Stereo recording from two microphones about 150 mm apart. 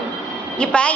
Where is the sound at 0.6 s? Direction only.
5° left (ahead or behind).